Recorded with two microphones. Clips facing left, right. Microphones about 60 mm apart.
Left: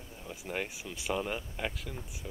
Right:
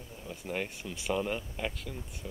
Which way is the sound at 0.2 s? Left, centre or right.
Centre.